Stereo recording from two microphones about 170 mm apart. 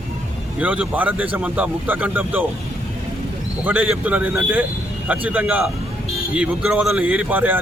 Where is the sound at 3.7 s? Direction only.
10° right (ahead or behind).